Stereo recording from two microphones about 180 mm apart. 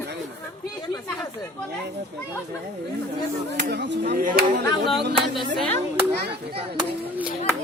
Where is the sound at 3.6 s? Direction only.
70° right (ahead or behind).